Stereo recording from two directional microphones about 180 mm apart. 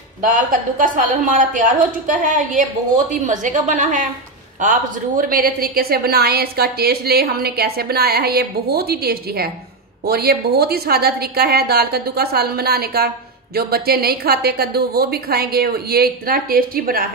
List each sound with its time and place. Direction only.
0.2 s a woman's voice: 45° right (ahead or behind)